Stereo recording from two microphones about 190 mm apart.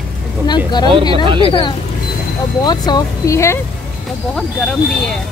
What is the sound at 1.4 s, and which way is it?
Speech, 25° left (ahead or behind).